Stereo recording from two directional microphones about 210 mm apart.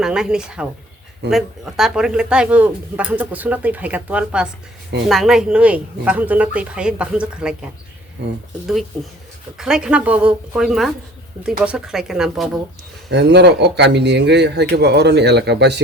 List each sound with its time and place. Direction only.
0.0 s speech: 5° right (ahead or behind)
9.6 s speech: 5° right (ahead or behind)
13.1 s speech: 55° right (ahead or behind)